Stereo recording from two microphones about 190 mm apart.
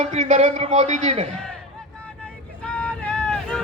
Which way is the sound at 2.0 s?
5° left (ahead or behind).